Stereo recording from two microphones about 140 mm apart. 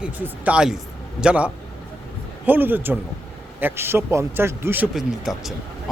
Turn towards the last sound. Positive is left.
turn(degrees=0)  # may be behind; listen again after turning